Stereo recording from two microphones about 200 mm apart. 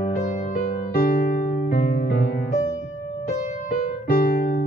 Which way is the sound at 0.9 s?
45° left (ahead or behind).